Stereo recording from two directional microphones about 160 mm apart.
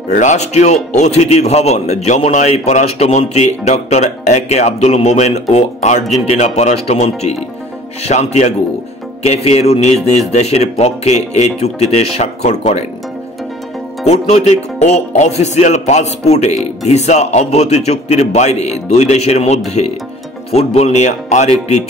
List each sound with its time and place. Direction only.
0.1 s a man's voice: 50° left (ahead or behind)
14.0 s a man's voice: 45° left (ahead or behind)